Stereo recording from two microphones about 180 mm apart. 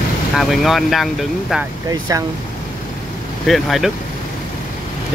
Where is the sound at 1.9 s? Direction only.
20° right (ahead or behind).